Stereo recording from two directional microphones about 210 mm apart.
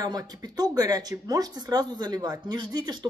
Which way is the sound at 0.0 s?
20° right (ahead or behind).